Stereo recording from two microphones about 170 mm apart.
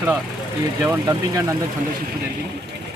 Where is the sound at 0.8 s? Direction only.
15° right (ahead or behind).